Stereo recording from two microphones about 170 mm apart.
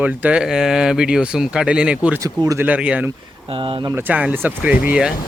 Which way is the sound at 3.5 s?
30° right (ahead or behind).